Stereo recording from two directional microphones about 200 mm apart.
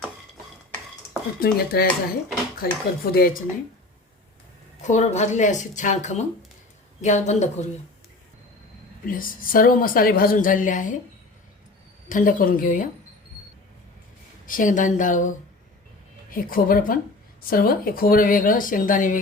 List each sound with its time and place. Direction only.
1.4 s a woman's voice: 50° left (ahead or behind)
4.8 s speech: 35° left (ahead or behind)
9.0 s a woman's voice: 45° left (ahead or behind)
12.0 s a woman's voice: 45° left (ahead or behind)
14.4 s a woman's voice: 40° left (ahead or behind)